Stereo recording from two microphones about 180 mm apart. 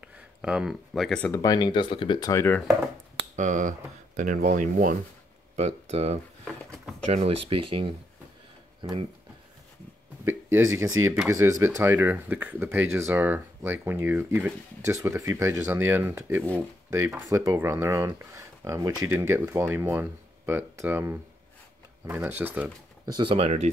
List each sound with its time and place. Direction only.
0.0 s speech: 5° right (ahead or behind)
1.3 s speech: 20° left (ahead or behind)
3.3 s speech: 45° right (ahead or behind)
5.6 s speech: 35° right (ahead or behind)
11.2 s speech: 15° right (ahead or behind)
23.1 s speech: 30° right (ahead or behind)